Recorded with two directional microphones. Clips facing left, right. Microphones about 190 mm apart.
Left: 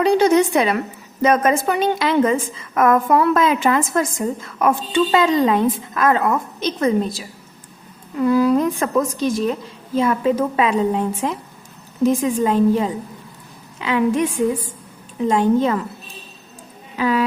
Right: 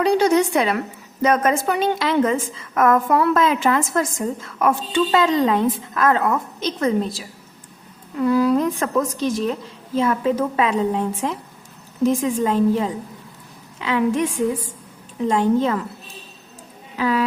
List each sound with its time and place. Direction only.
0.0 s a sound: 20° left (ahead or behind)
1.2 s a woman's voice: 20° left (ahead or behind)
15.3 s a woman's voice: 15° left (ahead or behind)
17.0 s a woman's voice: 15° left (ahead or behind)